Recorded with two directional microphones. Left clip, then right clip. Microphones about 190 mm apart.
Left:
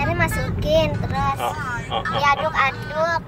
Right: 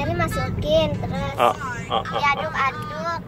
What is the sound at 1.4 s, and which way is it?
Speech, 55° right (ahead or behind).